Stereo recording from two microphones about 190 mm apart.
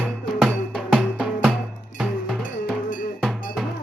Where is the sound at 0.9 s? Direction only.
5° right (ahead or behind).